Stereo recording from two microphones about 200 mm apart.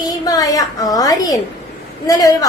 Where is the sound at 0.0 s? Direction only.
20° left (ahead or behind).